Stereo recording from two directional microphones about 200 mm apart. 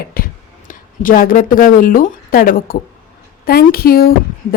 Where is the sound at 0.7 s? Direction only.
45° left (ahead or behind).